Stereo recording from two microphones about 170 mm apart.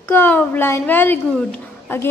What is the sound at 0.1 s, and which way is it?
A woman's voice, 10° left (ahead or behind).